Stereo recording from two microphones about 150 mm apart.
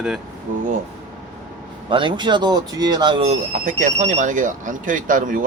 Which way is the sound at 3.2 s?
50° right (ahead or behind).